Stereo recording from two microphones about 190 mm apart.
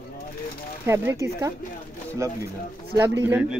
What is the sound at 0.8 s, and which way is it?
A man's voice, 15° right (ahead or behind).